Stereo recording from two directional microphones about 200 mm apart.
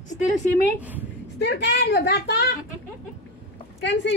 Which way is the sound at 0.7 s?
10° right (ahead or behind).